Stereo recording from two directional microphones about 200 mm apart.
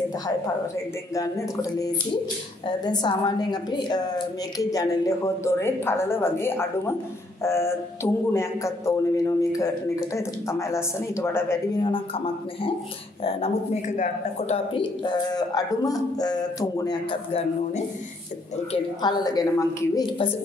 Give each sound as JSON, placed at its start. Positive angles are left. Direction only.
{"t": 1.1, "sound": "a woman's voice", "side_deg": 15}
{"t": 11.8, "sound": "a woman's voice", "side_deg": 25}
{"t": 13.2, "sound": "a woman's voice", "side_deg": 35}